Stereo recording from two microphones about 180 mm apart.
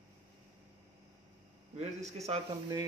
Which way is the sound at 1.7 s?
40° right (ahead or behind).